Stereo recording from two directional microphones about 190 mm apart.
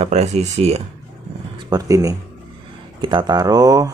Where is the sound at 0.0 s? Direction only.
35° right (ahead or behind).